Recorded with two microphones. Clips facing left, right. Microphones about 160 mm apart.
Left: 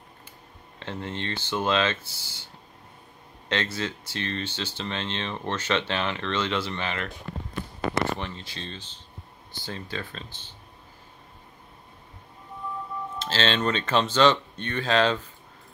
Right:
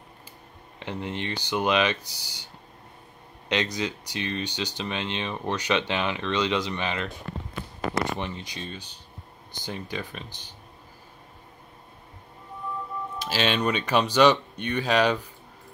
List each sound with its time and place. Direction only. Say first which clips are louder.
0.7 s speech: right 1 dB; 15° right (ahead or behind)
8.2 s speech: right 2 dB; 15° right (ahead or behind)
13.2 s speech: even; 15° right (ahead or behind)